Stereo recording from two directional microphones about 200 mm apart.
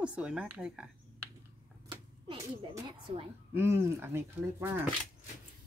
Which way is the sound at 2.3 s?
15° right (ahead or behind).